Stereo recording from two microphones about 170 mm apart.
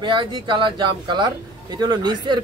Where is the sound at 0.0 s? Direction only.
30° right (ahead or behind).